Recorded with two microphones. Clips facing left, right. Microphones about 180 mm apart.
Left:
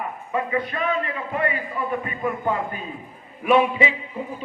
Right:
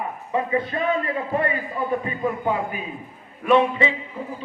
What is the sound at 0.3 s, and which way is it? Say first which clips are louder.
Speech: right 2 dB; 25° right (ahead or behind).